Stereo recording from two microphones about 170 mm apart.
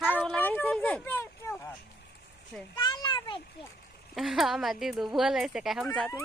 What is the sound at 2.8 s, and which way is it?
Children playing, 25° left (ahead or behind).